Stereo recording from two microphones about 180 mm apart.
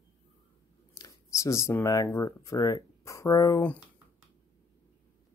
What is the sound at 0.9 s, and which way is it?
Speech, 20° left (ahead or behind).